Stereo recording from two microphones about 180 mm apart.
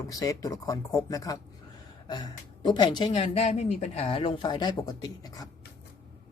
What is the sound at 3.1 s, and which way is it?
Speech, 35° left (ahead or behind).